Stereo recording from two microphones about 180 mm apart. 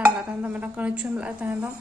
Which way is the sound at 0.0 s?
10° right (ahead or behind).